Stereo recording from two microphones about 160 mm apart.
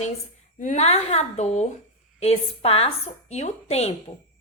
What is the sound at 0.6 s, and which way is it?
A woman's voice, 45° left (ahead or behind).